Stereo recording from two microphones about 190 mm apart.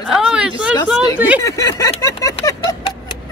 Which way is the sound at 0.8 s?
5° right (ahead or behind).